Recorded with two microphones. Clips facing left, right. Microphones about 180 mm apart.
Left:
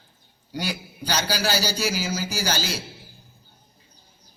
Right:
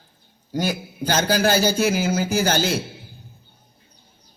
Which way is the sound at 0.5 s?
45° right (ahead or behind).